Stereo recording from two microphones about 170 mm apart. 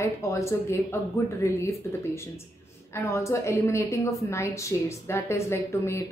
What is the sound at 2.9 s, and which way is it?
A woman's voice, 15° left (ahead or behind).